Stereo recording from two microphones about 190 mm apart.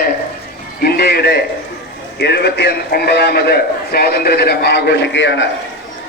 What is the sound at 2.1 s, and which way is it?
A man's voice, 60° left (ahead or behind).